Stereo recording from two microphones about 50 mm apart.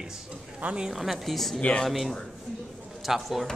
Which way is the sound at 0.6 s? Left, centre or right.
Centre.